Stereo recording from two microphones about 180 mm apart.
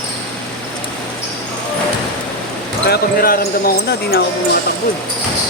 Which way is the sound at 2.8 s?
60° left (ahead or behind).